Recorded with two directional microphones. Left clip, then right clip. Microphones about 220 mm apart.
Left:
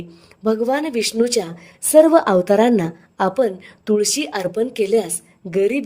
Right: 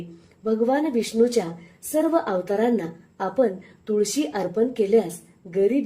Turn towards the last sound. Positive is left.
turn(degrees=45)  # may be behind; listen again after turning